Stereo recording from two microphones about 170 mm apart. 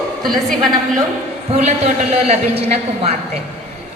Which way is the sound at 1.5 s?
40° right (ahead or behind).